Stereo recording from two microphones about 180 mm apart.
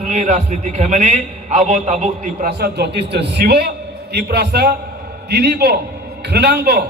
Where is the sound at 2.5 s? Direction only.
65° right (ahead or behind).